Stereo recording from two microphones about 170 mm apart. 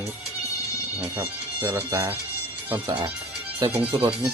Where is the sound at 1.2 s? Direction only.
15° right (ahead or behind); by 4.1 s 30° right (ahead or behind).